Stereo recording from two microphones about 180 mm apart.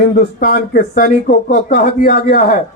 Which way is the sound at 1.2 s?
45° left (ahead or behind).